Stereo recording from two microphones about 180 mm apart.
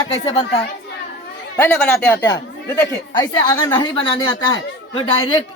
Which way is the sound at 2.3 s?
20° left (ahead or behind).